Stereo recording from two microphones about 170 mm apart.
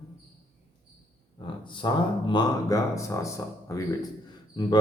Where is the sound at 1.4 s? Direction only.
30° left (ahead or behind).